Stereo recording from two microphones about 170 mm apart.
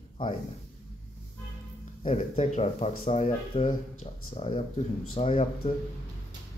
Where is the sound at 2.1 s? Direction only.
40° left (ahead or behind).